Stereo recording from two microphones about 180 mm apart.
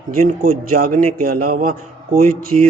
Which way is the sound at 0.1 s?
50° right (ahead or behind).